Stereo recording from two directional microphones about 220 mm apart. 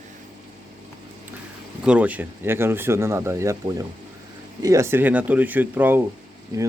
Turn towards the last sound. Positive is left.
turn(degrees=-15)  # may be behind; listen again after turning